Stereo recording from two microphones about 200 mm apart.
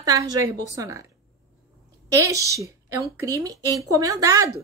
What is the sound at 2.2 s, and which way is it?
A woman's voice, 15° right (ahead or behind).